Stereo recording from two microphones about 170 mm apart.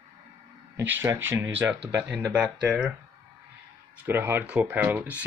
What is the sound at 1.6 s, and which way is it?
Speech, 15° right (ahead or behind).